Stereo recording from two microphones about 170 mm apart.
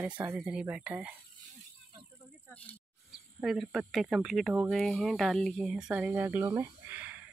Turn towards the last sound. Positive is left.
turn(degrees=-10)  # may be behind; listen again after turning